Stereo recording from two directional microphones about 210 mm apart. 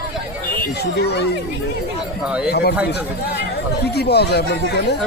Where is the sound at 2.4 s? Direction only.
50° left (ahead or behind).